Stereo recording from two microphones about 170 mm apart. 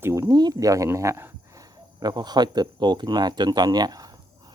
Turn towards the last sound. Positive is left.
turn(degrees=-25)  # may be behind; listen again after turning